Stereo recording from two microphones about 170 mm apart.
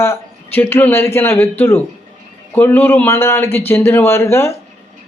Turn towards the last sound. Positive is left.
turn(degrees=15)  # may be behind; listen again after turning